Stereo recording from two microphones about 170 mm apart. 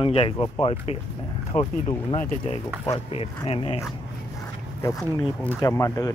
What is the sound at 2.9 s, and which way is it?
Speech, 35° left (ahead or behind).